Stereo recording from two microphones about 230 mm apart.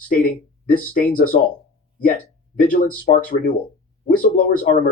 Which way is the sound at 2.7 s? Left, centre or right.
Left.